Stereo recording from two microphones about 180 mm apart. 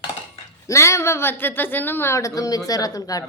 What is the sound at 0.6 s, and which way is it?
A woman's voice, 15° left (ahead or behind).